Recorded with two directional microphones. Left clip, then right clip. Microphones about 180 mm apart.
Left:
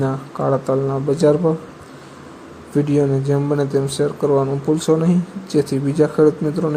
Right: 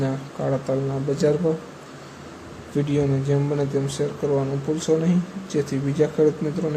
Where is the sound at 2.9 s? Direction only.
20° left (ahead or behind).